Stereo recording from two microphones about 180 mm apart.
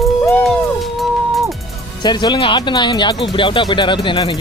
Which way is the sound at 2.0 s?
25° left (ahead or behind).